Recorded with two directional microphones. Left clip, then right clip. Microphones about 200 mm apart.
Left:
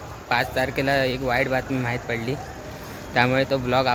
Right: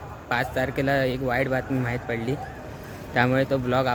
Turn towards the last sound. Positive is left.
turn(degrees=-10)  # may be behind; listen again after turning